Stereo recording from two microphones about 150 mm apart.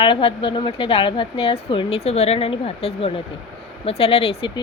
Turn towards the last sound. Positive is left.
turn(degrees=40)  # may be behind; listen again after turning